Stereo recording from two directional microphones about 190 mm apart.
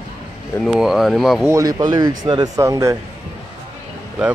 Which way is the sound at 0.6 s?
Centre (ahead or behind).